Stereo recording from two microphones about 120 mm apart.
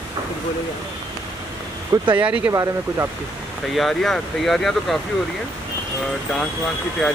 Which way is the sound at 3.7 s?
Centre (ahead or behind).